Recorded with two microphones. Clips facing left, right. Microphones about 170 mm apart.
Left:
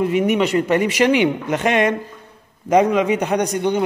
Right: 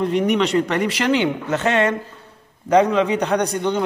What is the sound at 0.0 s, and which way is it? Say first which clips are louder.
A man's voice: left 1 dB; 10° left (ahead or behind).